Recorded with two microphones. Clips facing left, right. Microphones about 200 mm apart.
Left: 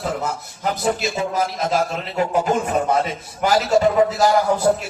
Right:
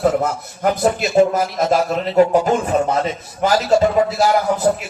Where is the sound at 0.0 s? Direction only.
55° right (ahead or behind).